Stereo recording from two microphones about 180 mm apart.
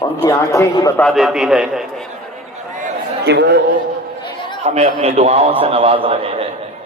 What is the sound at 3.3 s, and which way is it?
Speech, 70° right (ahead or behind).